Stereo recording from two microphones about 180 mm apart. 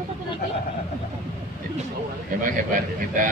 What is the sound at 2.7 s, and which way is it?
Speech, 45° right (ahead or behind).